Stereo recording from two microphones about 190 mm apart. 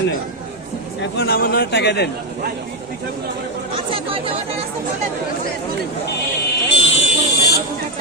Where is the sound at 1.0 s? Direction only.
65° left (ahead or behind).